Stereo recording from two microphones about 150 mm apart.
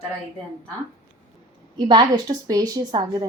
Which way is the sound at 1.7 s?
30° right (ahead or behind).